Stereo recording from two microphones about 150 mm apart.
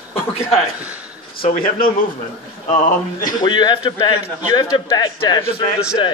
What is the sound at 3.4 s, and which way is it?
A man's voice, 30° left (ahead or behind).